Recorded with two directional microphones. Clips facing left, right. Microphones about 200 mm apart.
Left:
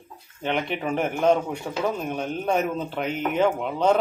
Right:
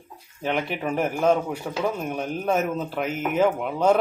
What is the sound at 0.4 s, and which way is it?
A man's voice, 5° right (ahead or behind).